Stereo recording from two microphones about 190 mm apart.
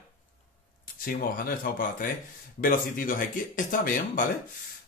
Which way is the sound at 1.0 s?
50° left (ahead or behind).